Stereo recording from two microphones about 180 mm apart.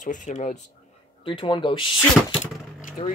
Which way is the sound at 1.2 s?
30° left (ahead or behind).